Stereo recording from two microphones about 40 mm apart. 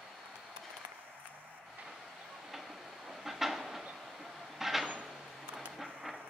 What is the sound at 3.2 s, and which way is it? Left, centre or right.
Train, centre.